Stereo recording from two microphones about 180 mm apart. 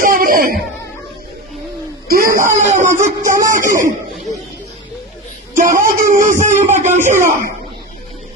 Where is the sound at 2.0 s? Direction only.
55° right (ahead or behind).